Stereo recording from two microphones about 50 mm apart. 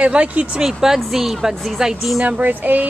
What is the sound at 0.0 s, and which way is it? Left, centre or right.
Speech, right.